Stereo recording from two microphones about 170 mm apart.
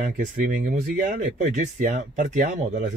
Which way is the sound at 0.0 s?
50° right (ahead or behind).